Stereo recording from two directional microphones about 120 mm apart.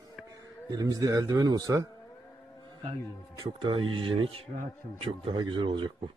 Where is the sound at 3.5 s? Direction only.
45° right (ahead or behind).